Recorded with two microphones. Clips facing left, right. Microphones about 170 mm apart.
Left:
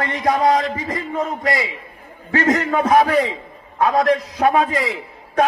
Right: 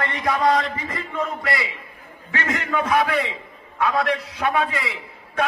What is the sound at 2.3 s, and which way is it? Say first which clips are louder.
A man's voice: left 7 dB; 35° left (ahead or behind).